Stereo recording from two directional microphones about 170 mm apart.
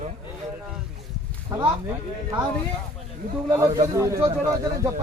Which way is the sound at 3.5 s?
20° right (ahead or behind).